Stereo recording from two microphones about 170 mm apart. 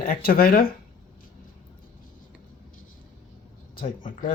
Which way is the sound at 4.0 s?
50° left (ahead or behind).